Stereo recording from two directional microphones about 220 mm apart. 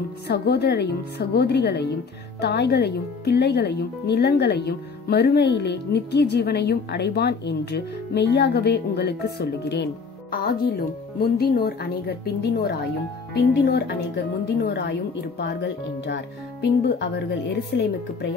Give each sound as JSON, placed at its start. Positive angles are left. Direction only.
{"t": 0.3, "sound": "speech", "side_deg": 50}